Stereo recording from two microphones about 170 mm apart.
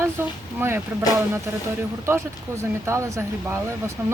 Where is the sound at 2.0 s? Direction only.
15° right (ahead or behind).